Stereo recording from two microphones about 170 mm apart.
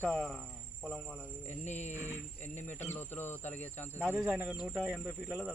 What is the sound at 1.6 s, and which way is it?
Speech, 40° left (ahead or behind).